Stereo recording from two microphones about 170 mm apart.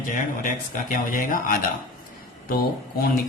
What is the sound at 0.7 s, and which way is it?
Speech, 50° left (ahead or behind).